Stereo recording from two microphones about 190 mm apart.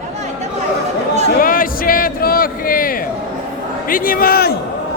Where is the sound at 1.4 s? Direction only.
45° left (ahead or behind).